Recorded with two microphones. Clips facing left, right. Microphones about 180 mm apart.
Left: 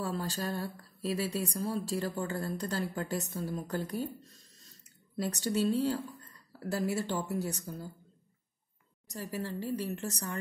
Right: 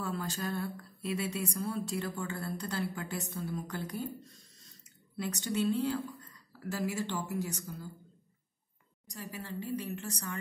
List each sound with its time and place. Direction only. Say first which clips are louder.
0.0 s speech: left 2 dB; 35° left (ahead or behind)
5.1 s speech: left 2 dB; 40° left (ahead or behind)
9.2 s speech: left 4 dB; 40° left (ahead or behind)